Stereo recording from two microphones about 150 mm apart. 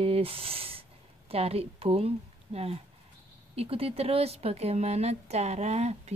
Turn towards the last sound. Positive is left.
turn(degrees=-45)  # may be behind; listen again after turning